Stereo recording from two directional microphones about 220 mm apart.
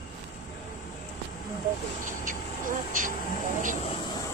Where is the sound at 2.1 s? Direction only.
35° right (ahead or behind).